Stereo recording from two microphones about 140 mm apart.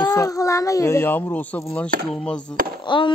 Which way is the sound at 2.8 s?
35° left (ahead or behind).